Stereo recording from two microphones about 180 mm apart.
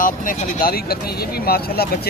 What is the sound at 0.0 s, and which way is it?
Speech, 50° left (ahead or behind).